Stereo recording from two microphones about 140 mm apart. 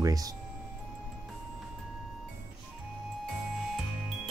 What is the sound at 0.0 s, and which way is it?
Speech, 25° right (ahead or behind).